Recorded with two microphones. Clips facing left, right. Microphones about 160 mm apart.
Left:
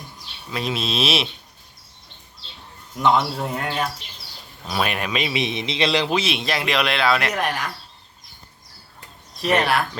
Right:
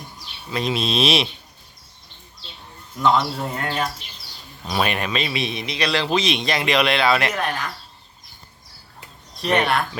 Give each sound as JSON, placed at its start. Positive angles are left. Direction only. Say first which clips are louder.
{"t": 0.5, "sound": "speech", "louder": "right 3 dB", "side_deg": 0}
{"t": 3.2, "sound": "a man's voice", "louder": "even", "side_deg": 10}
{"t": 6.1, "sound": "speech", "louder": "right 2 dB", "side_deg": 5}
{"t": 7.4, "sound": "a man's voice", "louder": "left 1 dB", "side_deg": 10}
{"t": 9.4, "sound": "speech", "louder": "even", "side_deg": 0}